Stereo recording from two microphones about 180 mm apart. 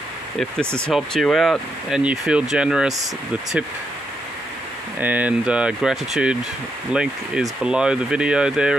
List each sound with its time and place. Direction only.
0.7 s speech: 5° left (ahead or behind)
5.0 s speech: 10° right (ahead or behind)